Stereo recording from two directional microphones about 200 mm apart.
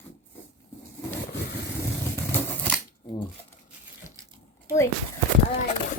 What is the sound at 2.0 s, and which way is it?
Scissors, 10° left (ahead or behind).